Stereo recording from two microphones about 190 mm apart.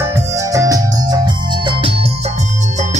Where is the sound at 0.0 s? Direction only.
15° right (ahead or behind).